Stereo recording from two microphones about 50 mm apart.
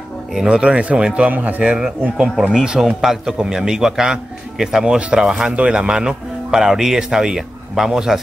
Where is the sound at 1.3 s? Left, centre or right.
Right.